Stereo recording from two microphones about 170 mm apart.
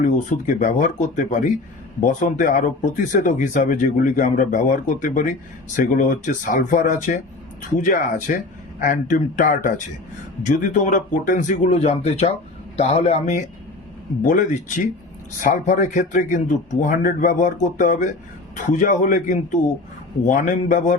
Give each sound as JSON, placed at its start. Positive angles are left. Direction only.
{"t": 0.0, "sound": "a man's voice", "side_deg": 50}
{"t": 14.2, "sound": "speech", "side_deg": 50}